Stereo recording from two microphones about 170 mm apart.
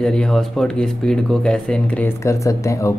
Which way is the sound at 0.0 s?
5° left (ahead or behind).